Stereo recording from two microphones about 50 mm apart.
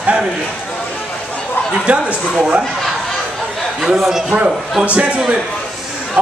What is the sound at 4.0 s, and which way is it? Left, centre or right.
Speech, centre.